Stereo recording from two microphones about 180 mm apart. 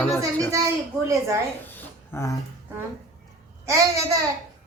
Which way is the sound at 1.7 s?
15° left (ahead or behind).